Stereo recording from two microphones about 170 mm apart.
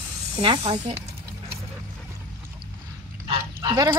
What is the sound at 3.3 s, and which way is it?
Dog, 25° right (ahead or behind).